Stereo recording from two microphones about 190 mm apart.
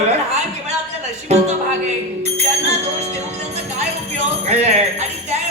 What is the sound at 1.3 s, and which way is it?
Speech, 35° right (ahead or behind).